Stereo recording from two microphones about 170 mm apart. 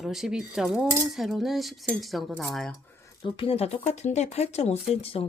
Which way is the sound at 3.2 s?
35° left (ahead or behind).